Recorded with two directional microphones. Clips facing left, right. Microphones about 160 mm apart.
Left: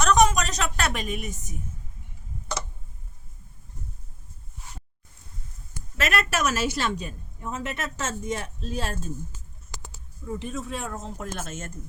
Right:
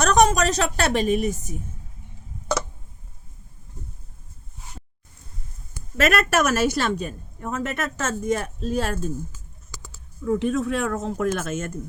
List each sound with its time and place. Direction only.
0.0 s a woman's voice: 35° right (ahead or behind)
6.0 s a woman's voice: 50° right (ahead or behind)
10.2 s speech: 70° right (ahead or behind)